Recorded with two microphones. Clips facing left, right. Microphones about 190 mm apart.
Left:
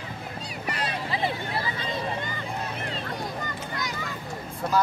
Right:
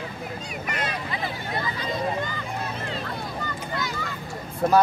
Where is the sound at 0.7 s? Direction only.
35° left (ahead or behind).